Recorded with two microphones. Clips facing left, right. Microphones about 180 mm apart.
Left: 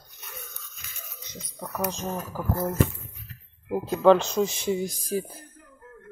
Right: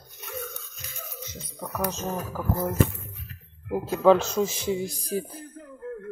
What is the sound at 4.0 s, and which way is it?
Speech, 5° right (ahead or behind).